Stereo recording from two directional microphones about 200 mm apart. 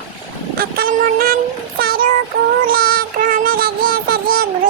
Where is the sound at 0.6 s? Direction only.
50° right (ahead or behind).